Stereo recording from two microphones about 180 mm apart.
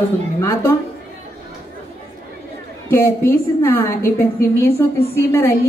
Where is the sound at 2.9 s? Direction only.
15° left (ahead or behind).